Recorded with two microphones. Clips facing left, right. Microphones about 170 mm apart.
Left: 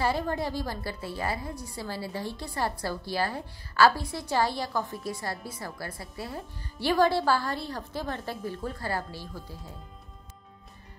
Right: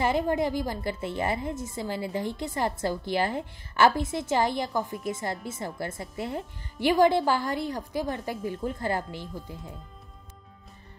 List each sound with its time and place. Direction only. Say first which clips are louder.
0.0 s a woman's voice: right 3 dB; 20° right (ahead or behind)